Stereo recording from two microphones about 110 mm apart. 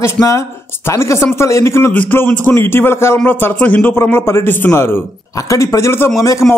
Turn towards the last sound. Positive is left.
turn(degrees=30)  # may be behind; listen again after turning